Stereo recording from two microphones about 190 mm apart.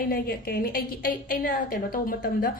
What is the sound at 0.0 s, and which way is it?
A woman's voice, 50° left (ahead or behind).